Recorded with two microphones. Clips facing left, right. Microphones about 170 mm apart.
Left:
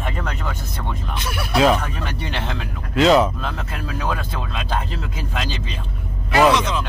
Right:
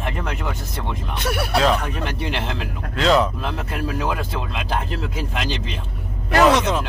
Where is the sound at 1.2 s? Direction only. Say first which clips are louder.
Right 7 dB; 60° right (ahead or behind).